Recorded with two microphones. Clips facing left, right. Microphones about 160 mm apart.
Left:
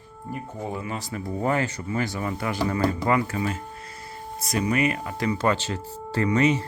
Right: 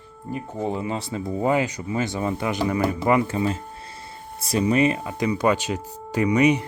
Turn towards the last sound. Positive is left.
turn(degrees=-15)  # may be behind; listen again after turning